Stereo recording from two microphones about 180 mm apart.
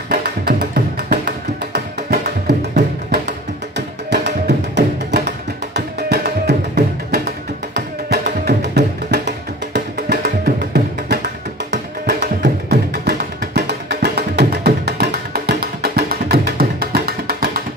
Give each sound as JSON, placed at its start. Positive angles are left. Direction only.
{"t": 0.1, "sound": "music", "side_deg": -60}
{"t": 1.2, "sound": "music", "side_deg": -65}